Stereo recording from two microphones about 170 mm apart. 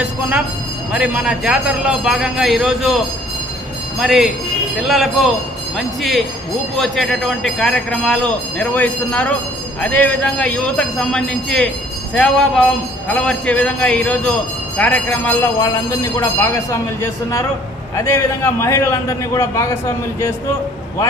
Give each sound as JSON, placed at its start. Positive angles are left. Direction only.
{"t": 0.0, "sound": "a sound", "side_deg": -5}
{"t": 0.9, "sound": "a man's voice", "side_deg": -5}
{"t": 4.0, "sound": "a man's voice", "side_deg": 0}
{"t": 17.9, "sound": "a man's voice", "side_deg": 15}